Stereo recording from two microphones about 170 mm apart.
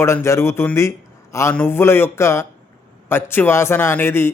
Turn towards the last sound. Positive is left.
turn(degrees=15)  # may be behind; listen again after turning